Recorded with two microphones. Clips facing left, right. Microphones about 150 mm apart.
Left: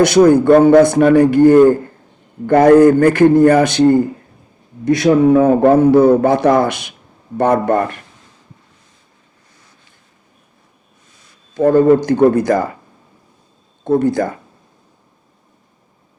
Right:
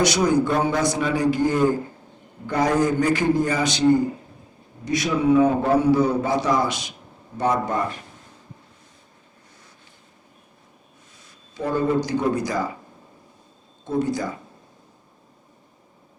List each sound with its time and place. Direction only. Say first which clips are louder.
0.0 s a man's voice: left 10 dB; 55° left (ahead or behind)
11.5 s speech: left 12 dB; 50° left (ahead or behind)
13.8 s a man's voice: left 9 dB; 55° left (ahead or behind)